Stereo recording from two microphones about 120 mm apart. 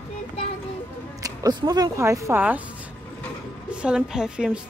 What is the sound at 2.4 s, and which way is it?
A woman's voice, 15° right (ahead or behind).